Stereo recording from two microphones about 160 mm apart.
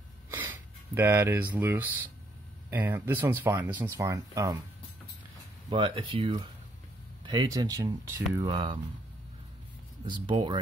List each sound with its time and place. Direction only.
0.3 s a sound: 15° right (ahead or behind)
2.7 s speech: 10° right (ahead or behind)
5.7 s speech: 30° right (ahead or behind)
10.0 s speech: 30° right (ahead or behind)